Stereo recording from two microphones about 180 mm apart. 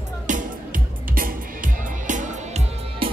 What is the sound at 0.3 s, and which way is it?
Music, 50° right (ahead or behind).